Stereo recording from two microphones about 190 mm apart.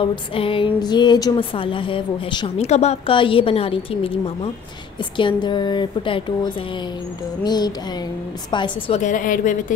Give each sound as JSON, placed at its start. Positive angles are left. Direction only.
{"t": 0.0, "sound": "a woman's voice", "side_deg": 30}
{"t": 9.0, "sound": "a woman's voice", "side_deg": 45}